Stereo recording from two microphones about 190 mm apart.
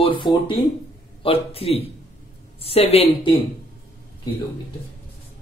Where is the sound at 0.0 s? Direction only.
25° left (ahead or behind).